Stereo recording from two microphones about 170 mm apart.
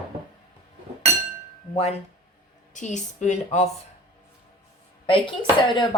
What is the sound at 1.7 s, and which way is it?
A woman's voice, 35° left (ahead or behind).